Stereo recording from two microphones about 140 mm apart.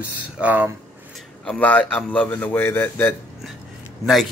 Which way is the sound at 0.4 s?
15° right (ahead or behind).